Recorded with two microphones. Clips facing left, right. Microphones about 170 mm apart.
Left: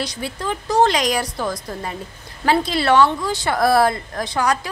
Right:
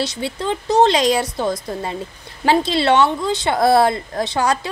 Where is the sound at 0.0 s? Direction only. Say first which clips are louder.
Right 3 dB; 25° right (ahead or behind).